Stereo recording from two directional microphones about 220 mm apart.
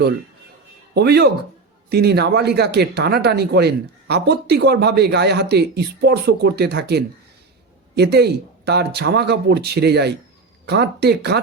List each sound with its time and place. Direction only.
0.9 s speech: 50° right (ahead or behind)